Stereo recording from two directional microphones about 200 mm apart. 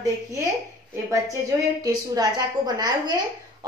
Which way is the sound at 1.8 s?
20° right (ahead or behind).